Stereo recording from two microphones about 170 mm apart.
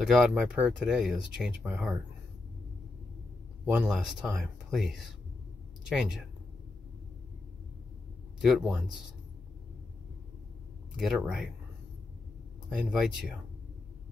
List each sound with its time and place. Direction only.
0.0 s speech: centre (ahead or behind)
3.6 s speech: 5° right (ahead or behind)
8.4 s speech: 5° right (ahead or behind)
11.0 s speech: centre (ahead or behind)
12.7 s speech: 5° right (ahead or behind)